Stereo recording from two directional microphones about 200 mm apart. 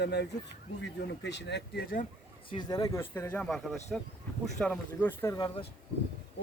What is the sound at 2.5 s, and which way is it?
Speech, 20° left (ahead or behind).